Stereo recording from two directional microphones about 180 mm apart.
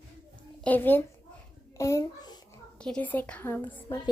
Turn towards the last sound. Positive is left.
turn(degrees=10)  # may be behind; listen again after turning